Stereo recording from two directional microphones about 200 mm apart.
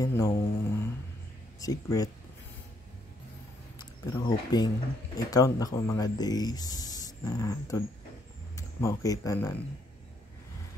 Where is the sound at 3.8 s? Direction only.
20° left (ahead or behind).